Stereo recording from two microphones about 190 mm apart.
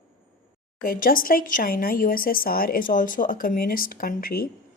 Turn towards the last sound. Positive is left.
turn(degrees=50)  # may be behind; listen again after turning